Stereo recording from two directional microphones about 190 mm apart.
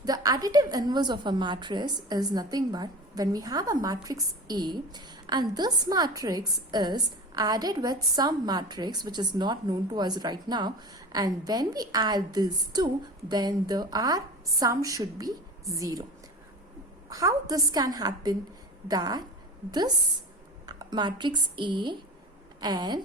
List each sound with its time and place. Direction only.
0.0 s a woman's voice: 20° right (ahead or behind)
17.1 s a woman's voice: 20° right (ahead or behind)
20.7 s a woman's voice: 20° right (ahead or behind)